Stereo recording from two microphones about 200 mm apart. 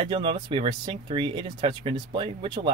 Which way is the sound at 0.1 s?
25° right (ahead or behind).